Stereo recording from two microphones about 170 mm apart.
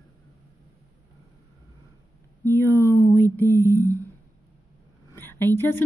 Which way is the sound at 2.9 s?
15° left (ahead or behind).